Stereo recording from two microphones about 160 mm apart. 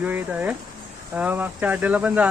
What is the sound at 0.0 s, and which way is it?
Speech, 10° right (ahead or behind).